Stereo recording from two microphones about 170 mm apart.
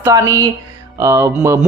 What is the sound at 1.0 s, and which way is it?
Mantra, 20° right (ahead or behind).